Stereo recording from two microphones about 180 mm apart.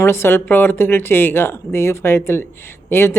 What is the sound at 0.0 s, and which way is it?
Speech, 15° left (ahead or behind).